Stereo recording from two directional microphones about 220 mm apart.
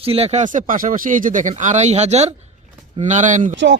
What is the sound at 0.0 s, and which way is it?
Speech, 25° right (ahead or behind).